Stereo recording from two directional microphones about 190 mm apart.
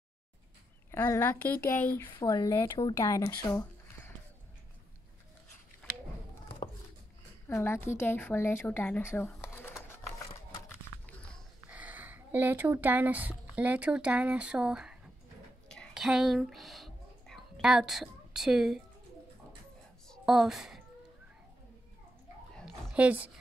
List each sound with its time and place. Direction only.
0.9 s a woman's voice: 10° left (ahead or behind)
2.1 s speech: 25° left (ahead or behind)
7.4 s a woman's voice: 15° left (ahead or behind)
9.6 s a sound: 10° left (ahead or behind)
11.7 s speech: 10° right (ahead or behind)
15.7 s whispering: centre (ahead or behind)
20.1 s a sound: centre (ahead or behind)
22.6 s dog: 5° right (ahead or behind)